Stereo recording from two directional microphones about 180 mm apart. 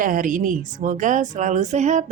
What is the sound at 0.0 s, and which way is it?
A woman's voice, 50° right (ahead or behind).